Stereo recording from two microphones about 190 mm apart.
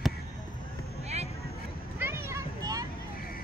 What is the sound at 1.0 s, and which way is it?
Vehicle, 35° right (ahead or behind).